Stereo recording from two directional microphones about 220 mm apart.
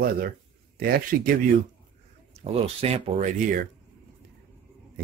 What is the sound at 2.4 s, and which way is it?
Speech, 25° right (ahead or behind).